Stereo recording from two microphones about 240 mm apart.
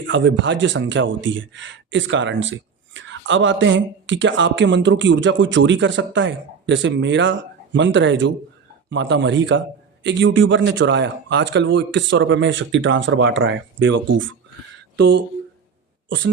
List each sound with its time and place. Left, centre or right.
0.0 s speech: right
16.0 s speech: right